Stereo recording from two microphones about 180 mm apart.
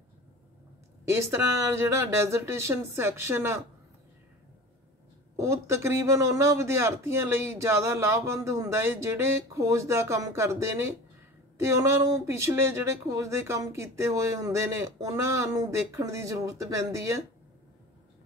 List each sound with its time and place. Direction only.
1.1 s speech: 15° right (ahead or behind)
5.3 s speech: 15° right (ahead or behind)